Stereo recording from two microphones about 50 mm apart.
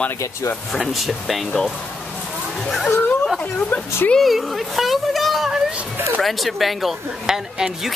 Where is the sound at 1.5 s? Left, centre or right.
Centre.